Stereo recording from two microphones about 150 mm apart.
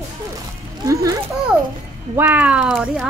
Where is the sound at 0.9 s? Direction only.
20° right (ahead or behind).